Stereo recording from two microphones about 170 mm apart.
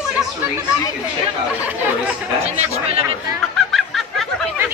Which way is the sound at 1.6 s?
10° right (ahead or behind).